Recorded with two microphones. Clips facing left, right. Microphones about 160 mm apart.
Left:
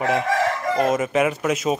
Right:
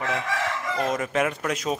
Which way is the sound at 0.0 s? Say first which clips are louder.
Left 7 dB; 40° left (ahead or behind).